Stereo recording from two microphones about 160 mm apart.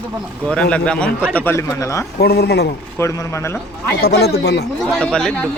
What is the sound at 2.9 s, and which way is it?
Speech, 20° left (ahead or behind).